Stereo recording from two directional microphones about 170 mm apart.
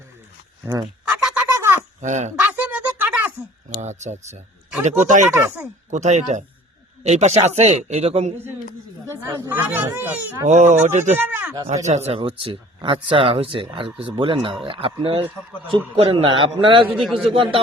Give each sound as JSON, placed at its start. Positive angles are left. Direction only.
{"t": 0.6, "sound": "speech", "side_deg": -20}
{"t": 1.3, "sound": "a sound", "side_deg": -15}
{"t": 2.0, "sound": "speech", "side_deg": -45}
{"t": 2.5, "sound": "a sound", "side_deg": -10}
{"t": 3.8, "sound": "speech", "side_deg": -40}
{"t": 5.3, "sound": "speech", "side_deg": -15}
{"t": 5.9, "sound": "speech", "side_deg": -45}
{"t": 9.2, "sound": "speech", "side_deg": -10}
{"t": 10.5, "sound": "speech", "side_deg": -45}
{"t": 11.2, "sound": "speech", "side_deg": -10}
{"t": 11.9, "sound": "speech", "side_deg": -40}
{"t": 17.0, "sound": "a man's voice", "side_deg": 0}
{"t": 17.3, "sound": "speech", "side_deg": -30}